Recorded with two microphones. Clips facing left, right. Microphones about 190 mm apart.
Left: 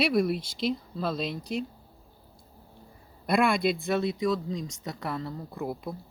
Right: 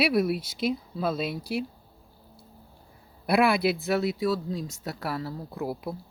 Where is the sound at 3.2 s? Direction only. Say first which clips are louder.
Right 2 dB; 5° right (ahead or behind).